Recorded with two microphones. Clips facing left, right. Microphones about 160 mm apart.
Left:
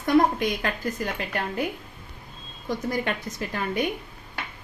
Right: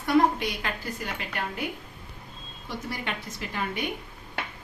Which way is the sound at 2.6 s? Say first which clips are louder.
Left 7 dB; 45° left (ahead or behind).